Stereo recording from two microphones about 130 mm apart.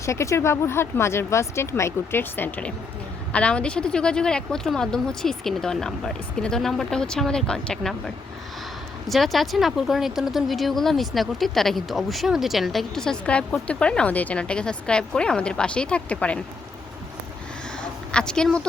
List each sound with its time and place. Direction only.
0.0 s speech: 25° left (ahead or behind)
18.1 s a woman's voice: 5° left (ahead or behind)